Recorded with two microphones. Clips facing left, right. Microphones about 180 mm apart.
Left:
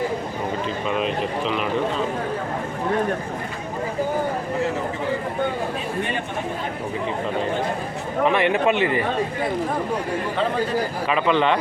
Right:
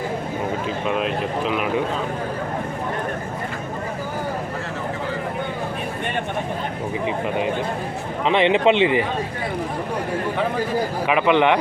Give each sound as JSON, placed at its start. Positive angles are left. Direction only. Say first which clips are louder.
{"t": 0.9, "sound": "speech", "louder": "right 1 dB", "side_deg": 0}
{"t": 8.2, "sound": "a man's voice", "louder": "right 2 dB", "side_deg": -20}
{"t": 11.1, "sound": "a man's voice", "louder": "right 3 dB", "side_deg": -15}